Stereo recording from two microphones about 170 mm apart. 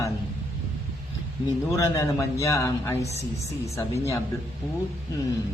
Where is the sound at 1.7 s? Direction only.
20° left (ahead or behind).